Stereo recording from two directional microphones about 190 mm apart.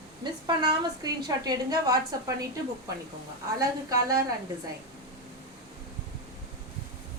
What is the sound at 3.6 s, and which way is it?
Speech, 15° right (ahead or behind).